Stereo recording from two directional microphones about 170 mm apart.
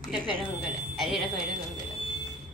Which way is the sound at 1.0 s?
Centre (ahead or behind).